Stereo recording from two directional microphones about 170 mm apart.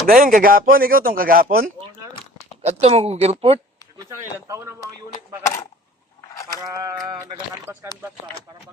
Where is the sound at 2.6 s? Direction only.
35° right (ahead or behind).